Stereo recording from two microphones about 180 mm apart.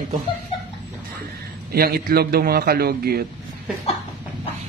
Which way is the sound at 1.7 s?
55° right (ahead or behind).